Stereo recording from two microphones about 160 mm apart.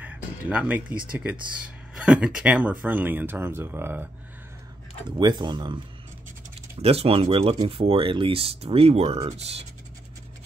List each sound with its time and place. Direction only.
0.0 s speech: 10° right (ahead or behind)
2.0 s speech: 5° right (ahead or behind)
5.1 s speech: 25° right (ahead or behind)
6.8 s speech: 40° right (ahead or behind)